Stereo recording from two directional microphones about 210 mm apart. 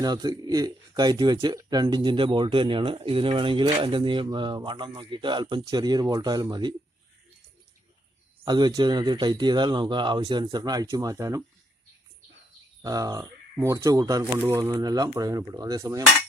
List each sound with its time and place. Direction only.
0.0 s speech: 20° right (ahead or behind)
8.4 s speech: 20° right (ahead or behind)
12.8 s speech: 15° right (ahead or behind)